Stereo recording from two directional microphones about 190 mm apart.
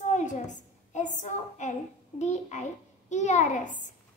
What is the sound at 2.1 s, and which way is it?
A child's voice, 35° left (ahead or behind).